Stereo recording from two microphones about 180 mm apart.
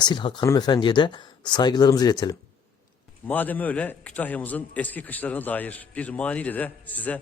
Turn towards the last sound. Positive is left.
turn(degrees=10)  # may be behind; listen again after turning